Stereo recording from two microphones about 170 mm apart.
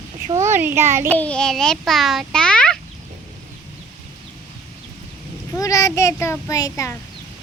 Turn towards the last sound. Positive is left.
turn(degrees=20)  # may be behind; listen again after turning